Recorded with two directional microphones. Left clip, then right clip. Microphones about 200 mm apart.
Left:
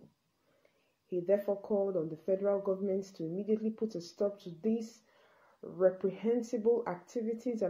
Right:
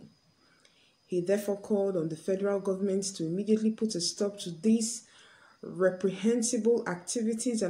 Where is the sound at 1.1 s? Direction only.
15° right (ahead or behind).